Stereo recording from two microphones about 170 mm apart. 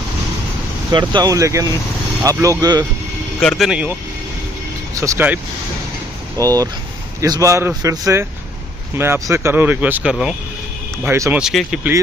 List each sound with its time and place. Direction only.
0.9 s a man's voice: 25° right (ahead or behind)
3.3 s speech: centre (ahead or behind)
5.0 s a man's voice: 15° right (ahead or behind)
11.1 s speech: 15° right (ahead or behind)
11.3 s speech: 5° right (ahead or behind)